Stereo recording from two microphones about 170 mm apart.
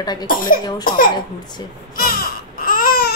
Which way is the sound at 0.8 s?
55° left (ahead or behind).